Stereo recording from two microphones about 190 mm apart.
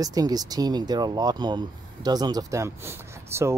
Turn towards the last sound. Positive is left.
turn(degrees=-15)  # may be behind; listen again after turning